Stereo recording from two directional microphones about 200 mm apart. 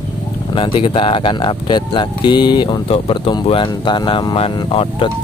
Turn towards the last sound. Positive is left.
turn(degrees=25)  # may be behind; listen again after turning